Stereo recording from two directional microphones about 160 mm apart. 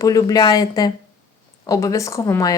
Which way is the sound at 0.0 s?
20° left (ahead or behind).